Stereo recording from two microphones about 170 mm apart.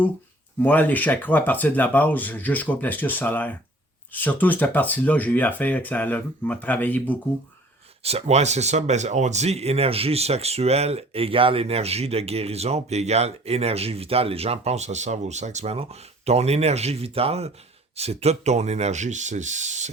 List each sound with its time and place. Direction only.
0.6 s speech: 10° left (ahead or behind)
8.0 s speech: 40° right (ahead or behind)